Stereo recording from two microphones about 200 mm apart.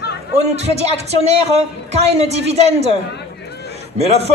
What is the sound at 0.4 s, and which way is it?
Speech, 30° right (ahead or behind).